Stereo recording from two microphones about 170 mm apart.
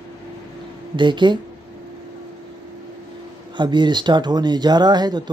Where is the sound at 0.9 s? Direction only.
25° right (ahead or behind).